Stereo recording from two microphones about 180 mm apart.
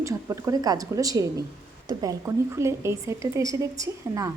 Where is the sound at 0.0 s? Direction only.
15° right (ahead or behind).